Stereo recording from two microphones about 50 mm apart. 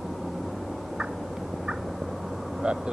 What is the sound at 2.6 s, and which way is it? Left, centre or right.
Vehicle, centre.